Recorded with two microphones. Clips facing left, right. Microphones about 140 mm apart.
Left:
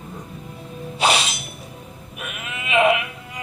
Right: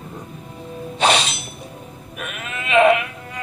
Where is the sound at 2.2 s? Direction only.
10° left (ahead or behind).